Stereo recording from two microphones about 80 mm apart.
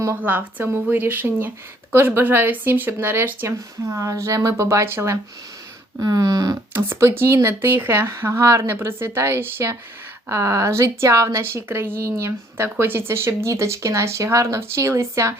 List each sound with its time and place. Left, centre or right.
0.2 s speech: right
6.0 s a sound: right
6.7 s speech: right